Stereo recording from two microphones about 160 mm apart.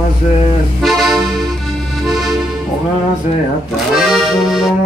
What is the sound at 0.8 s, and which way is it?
Accordion, centre (ahead or behind).